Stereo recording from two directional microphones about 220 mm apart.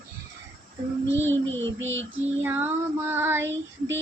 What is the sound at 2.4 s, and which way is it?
Child singing, 10° right (ahead or behind).